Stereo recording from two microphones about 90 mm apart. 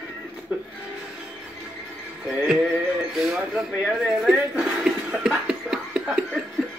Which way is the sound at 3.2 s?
5° right (ahead or behind).